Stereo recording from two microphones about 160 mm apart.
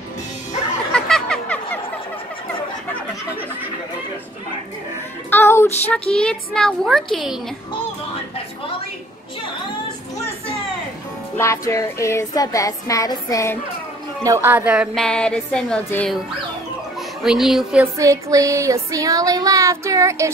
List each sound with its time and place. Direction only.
0.9 s music: 5° left (ahead or behind)
5.3 s child singing: 15° left (ahead or behind)
6.1 s music: 5° left (ahead or behind)
11.3 s music: 15° left (ahead or behind)
14.2 s a woman's voice: 15° right (ahead or behind)
15.0 s music: 5° left (ahead or behind)
17.2 s music: 5° right (ahead or behind)
17.9 s music: 20° right (ahead or behind)